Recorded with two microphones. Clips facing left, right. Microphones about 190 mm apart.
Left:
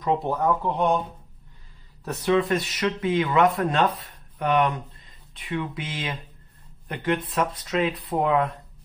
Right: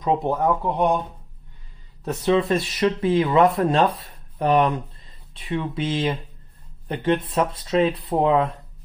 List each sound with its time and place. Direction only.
0.0 s speech: 20° right (ahead or behind)
2.0 s speech: 25° right (ahead or behind)